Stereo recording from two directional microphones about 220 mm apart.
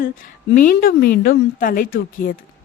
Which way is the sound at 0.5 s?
40° left (ahead or behind).